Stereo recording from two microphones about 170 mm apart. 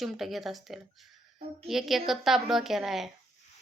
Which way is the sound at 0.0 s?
Centre (ahead or behind).